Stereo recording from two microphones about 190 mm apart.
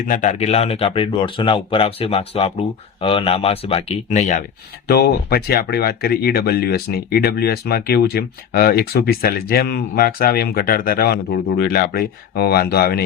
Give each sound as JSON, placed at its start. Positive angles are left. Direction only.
{"t": 0.1, "sound": "speech", "side_deg": 40}
{"t": 4.9, "sound": "speech", "side_deg": 55}